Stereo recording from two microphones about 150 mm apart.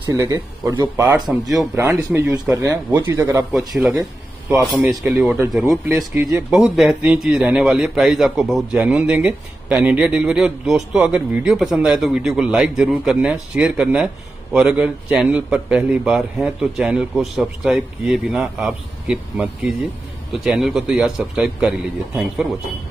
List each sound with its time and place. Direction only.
0.0 s speech: 20° right (ahead or behind)
1.3 s a man's voice: 5° right (ahead or behind)
2.1 s speech: 20° right (ahead or behind)
3.5 s a man's voice: centre (ahead or behind)